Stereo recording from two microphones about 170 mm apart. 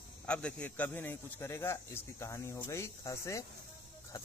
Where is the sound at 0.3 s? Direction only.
5° left (ahead or behind).